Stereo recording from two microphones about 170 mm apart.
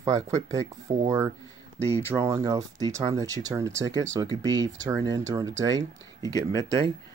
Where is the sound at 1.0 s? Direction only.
20° right (ahead or behind).